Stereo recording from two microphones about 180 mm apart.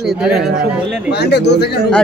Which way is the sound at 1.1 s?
70° left (ahead or behind).